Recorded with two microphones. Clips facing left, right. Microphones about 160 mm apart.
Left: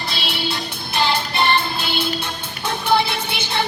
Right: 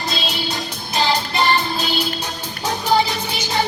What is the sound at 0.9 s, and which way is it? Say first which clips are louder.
Music: right 1 dB; 40° right (ahead or behind).